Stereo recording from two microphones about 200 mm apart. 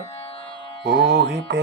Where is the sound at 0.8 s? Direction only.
55° right (ahead or behind).